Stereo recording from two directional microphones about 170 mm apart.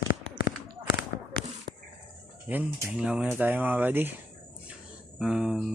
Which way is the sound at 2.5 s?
10° right (ahead or behind).